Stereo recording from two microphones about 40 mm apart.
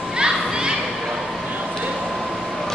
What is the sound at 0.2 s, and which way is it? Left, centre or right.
Children playing, centre.